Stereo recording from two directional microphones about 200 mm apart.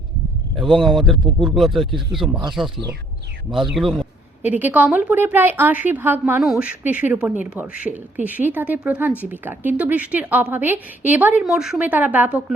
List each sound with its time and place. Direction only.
1.1 s speech: 25° right (ahead or behind)
1.5 s a woman's voice: centre (ahead or behind)